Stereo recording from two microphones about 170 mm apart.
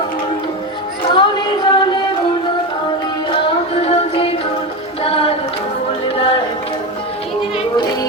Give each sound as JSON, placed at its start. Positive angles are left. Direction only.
{"t": 1.1, "sound": "music", "side_deg": 25}
{"t": 3.3, "sound": "music", "side_deg": 35}